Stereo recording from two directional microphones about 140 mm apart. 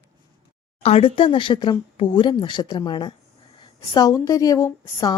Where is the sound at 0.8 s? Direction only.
40° left (ahead or behind).